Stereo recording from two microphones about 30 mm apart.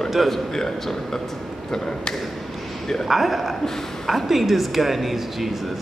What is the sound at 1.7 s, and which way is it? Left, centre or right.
Speech, left.